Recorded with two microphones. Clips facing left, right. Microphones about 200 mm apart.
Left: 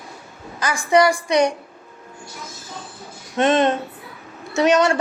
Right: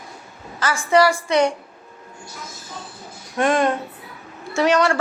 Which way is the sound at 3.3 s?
20° left (ahead or behind).